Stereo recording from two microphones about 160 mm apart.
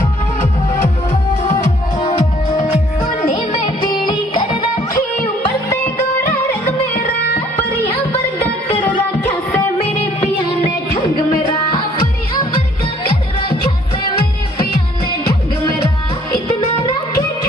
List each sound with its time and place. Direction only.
2.0 s music: 35° left (ahead or behind)
3.6 s music: 30° left (ahead or behind)
5.7 s music: 15° left (ahead or behind)
9.8 s music: 35° left (ahead or behind)